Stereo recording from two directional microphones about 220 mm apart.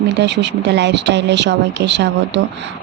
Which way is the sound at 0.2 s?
50° right (ahead or behind).